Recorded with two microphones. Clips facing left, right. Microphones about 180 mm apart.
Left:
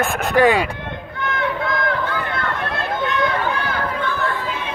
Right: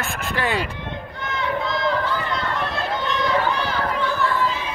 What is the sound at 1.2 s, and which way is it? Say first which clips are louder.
Run: left 3 dB; 55° left (ahead or behind).